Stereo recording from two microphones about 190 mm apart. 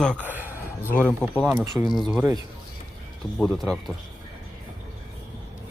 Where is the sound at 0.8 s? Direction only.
10° left (ahead or behind).